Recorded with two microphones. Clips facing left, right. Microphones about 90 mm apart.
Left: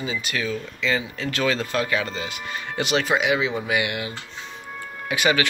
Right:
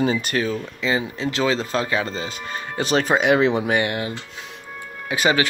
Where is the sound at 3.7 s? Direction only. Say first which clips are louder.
Right 3 dB; 35° right (ahead or behind).